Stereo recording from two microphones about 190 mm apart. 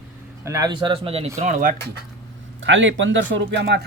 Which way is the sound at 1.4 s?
45° right (ahead or behind).